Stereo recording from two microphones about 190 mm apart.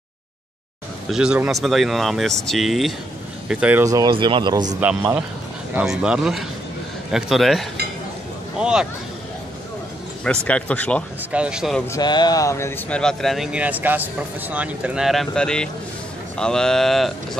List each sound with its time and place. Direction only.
1.1 s speech: 5° right (ahead or behind)
3.8 s speech: 20° right (ahead or behind)
5.8 s speech: 5° right (ahead or behind)
10.2 s speech: 5° left (ahead or behind)
11.3 s speech: 5° right (ahead or behind)
11.9 s speech: 20° left (ahead or behind); by 17.1 s centre (ahead or behind)